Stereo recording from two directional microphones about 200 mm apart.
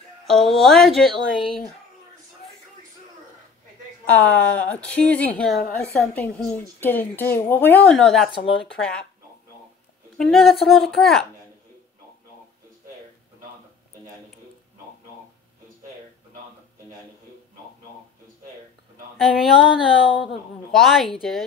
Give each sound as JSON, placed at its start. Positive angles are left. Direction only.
{"t": 0.3, "sound": "a woman's voice", "side_deg": 0}
{"t": 4.0, "sound": "a woman's voice", "side_deg": 5}
{"t": 10.1, "sound": "a woman's voice", "side_deg": 0}
{"t": 19.1, "sound": "speech", "side_deg": 0}
{"t": 19.6, "sound": "speech", "side_deg": 25}
{"t": 20.7, "sound": "a woman's voice", "side_deg": 0}